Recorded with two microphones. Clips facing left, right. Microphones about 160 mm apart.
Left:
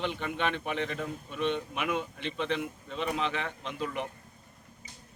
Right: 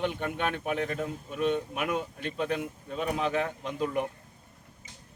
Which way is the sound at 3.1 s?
15° right (ahead or behind).